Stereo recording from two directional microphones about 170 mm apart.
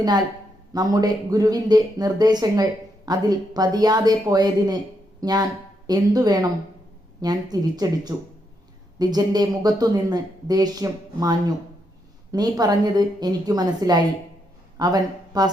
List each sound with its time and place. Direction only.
0.0 s speech: 20° right (ahead or behind)